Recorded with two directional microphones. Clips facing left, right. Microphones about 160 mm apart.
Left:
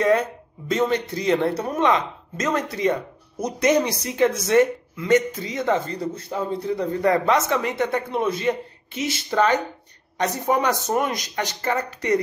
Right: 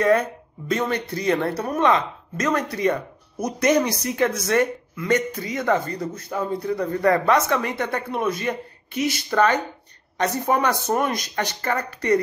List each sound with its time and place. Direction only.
0.7 s speech: 20° left (ahead or behind)